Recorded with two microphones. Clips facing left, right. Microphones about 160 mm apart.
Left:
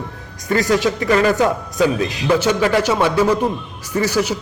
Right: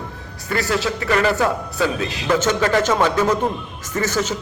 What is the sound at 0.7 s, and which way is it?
A man's voice, 15° left (ahead or behind).